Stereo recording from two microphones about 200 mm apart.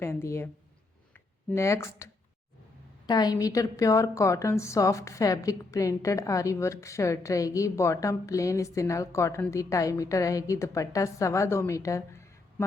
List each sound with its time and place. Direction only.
0.0 s a woman's voice: 15° left (ahead or behind)
1.5 s a woman's voice: 15° left (ahead or behind)
3.1 s a woman's voice: 20° left (ahead or behind)